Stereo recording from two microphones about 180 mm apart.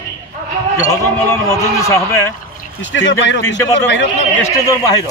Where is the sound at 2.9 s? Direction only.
90° left.